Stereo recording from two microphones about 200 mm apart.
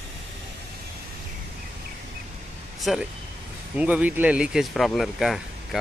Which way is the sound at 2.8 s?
Centre (ahead or behind).